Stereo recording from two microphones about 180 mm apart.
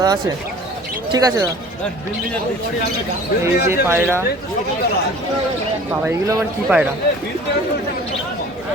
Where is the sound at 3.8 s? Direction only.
15° right (ahead or behind).